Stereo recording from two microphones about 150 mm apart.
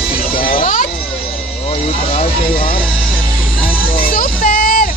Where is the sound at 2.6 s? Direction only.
35° left (ahead or behind).